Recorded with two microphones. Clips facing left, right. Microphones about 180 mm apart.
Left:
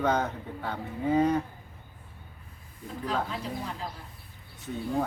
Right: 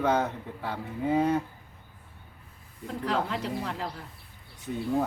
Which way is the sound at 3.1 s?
80° right.